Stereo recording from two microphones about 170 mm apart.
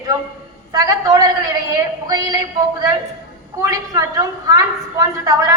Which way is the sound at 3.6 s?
20° right (ahead or behind).